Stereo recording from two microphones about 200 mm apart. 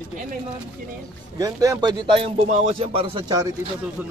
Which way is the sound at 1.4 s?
20° right (ahead or behind).